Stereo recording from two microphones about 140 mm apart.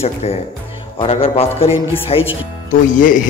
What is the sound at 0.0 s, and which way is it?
A man's voice, 45° left (ahead or behind).